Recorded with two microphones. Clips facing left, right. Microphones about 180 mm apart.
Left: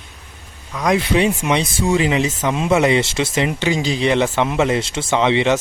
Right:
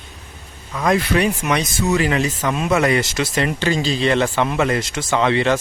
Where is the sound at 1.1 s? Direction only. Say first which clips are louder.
Left 3 dB; 15° left (ahead or behind).